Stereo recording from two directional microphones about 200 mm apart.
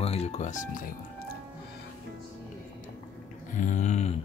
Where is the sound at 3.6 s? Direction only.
40° left (ahead or behind).